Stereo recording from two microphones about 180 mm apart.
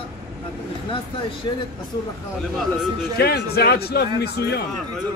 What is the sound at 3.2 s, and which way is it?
A man's voice, 60° left (ahead or behind).